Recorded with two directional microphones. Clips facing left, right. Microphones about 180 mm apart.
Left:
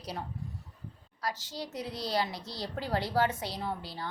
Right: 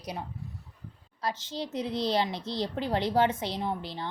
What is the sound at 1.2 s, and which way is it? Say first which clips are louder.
Speech: right 4 dB; 25° right (ahead or behind).